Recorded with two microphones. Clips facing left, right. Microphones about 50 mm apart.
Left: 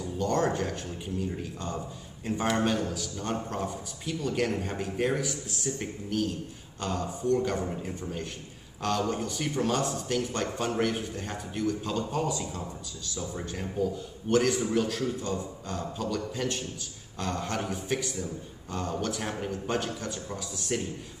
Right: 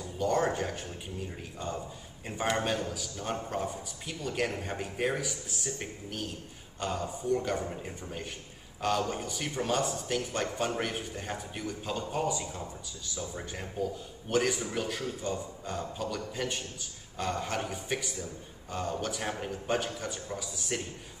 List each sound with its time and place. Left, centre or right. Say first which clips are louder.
0.0 s a man's voice: left 1 dB; centre